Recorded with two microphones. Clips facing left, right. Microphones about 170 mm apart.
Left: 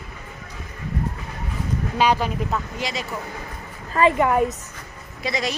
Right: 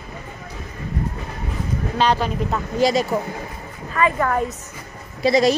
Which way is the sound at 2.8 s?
40° right (ahead or behind).